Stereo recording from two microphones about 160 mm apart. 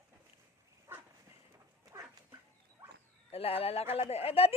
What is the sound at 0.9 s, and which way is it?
Dog, 15° right (ahead or behind).